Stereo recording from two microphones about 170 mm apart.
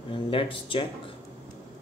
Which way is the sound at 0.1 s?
30° left (ahead or behind).